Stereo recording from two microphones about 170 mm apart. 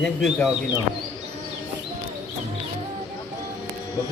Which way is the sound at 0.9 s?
30° right (ahead or behind).